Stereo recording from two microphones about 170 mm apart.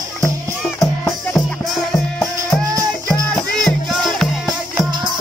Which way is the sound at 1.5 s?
Centre (ahead or behind).